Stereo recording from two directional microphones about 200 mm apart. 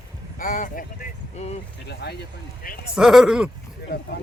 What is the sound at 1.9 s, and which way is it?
Speech, 55° left (ahead or behind).